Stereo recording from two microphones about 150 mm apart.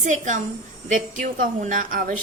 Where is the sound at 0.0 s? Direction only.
55° right (ahead or behind).